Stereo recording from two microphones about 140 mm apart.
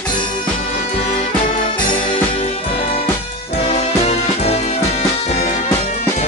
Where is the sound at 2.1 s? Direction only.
40° left (ahead or behind).